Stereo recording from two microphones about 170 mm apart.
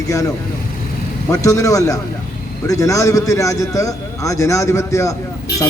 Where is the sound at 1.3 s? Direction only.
20° left (ahead or behind).